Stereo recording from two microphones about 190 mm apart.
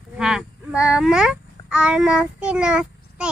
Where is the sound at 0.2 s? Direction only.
5° right (ahead or behind).